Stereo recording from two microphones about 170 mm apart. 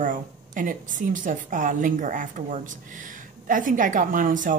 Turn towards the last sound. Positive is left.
turn(degrees=-50)  # may be behind; listen again after turning